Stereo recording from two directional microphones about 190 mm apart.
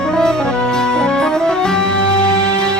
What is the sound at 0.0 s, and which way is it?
Music, 5° left (ahead or behind).